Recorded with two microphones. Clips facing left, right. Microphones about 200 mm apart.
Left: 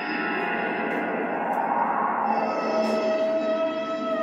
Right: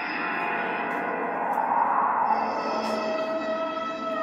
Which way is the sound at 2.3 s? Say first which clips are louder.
Left 3 dB; 25° left (ahead or behind).